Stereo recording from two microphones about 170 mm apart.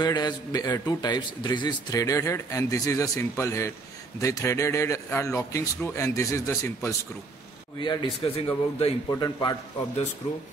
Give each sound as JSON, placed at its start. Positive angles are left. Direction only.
{"t": 0.0, "sound": "a man's voice", "side_deg": 25}
{"t": 7.8, "sound": "a man's voice", "side_deg": 30}
{"t": 9.2, "sound": "a man's voice", "side_deg": 25}